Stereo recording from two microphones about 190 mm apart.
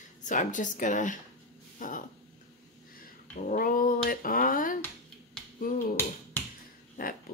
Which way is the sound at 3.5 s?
45° left (ahead or behind).